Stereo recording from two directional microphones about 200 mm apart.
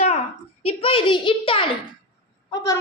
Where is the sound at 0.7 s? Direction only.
25° left (ahead or behind).